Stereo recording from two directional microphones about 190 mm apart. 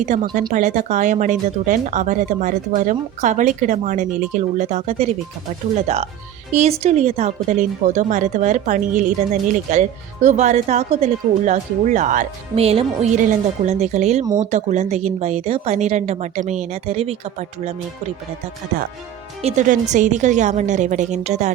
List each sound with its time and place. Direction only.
0.5 s speech: 40° right (ahead or behind)
19.4 s speech: 35° right (ahead or behind)